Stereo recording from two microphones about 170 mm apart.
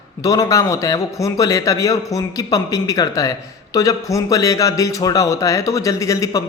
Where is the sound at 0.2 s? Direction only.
20° left (ahead or behind).